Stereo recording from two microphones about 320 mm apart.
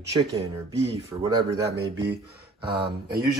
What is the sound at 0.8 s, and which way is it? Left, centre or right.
Speech, centre.